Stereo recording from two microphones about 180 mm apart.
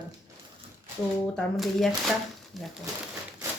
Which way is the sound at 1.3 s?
Centre (ahead or behind).